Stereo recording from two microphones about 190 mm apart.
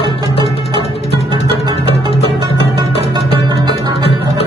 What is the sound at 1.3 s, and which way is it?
Music, 25° right (ahead or behind).